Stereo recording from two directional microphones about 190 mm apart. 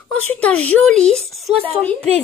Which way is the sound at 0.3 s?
5° left (ahead or behind).